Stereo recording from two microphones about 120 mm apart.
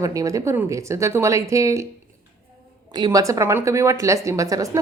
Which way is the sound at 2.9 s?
30° right (ahead or behind).